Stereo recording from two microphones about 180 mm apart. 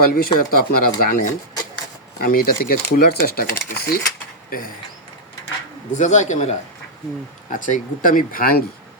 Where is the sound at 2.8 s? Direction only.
55° left (ahead or behind).